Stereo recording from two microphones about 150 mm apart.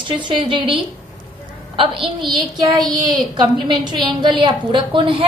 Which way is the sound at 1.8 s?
30° right (ahead or behind).